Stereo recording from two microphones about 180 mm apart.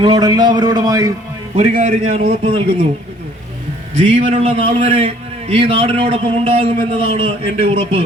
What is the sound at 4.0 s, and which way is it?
A man's voice, 35° right (ahead or behind).